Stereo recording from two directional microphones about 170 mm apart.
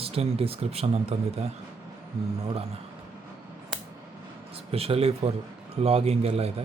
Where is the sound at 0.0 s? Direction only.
35° right (ahead or behind).